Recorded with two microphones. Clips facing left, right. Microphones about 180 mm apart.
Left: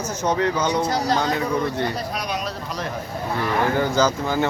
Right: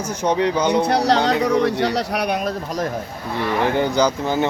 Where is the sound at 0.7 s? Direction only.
65° right (ahead or behind).